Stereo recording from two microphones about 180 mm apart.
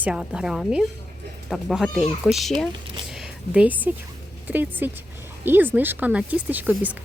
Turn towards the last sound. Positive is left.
turn(degrees=-10)  # may be behind; listen again after turning